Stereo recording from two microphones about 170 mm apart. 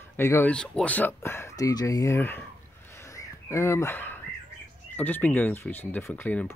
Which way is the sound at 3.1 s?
20° left (ahead or behind).